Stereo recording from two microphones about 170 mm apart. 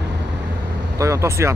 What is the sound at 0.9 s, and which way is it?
Speech, 15° right (ahead or behind).